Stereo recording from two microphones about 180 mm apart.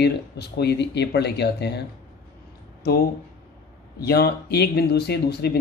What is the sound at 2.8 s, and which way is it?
Speech, 60° left (ahead or behind).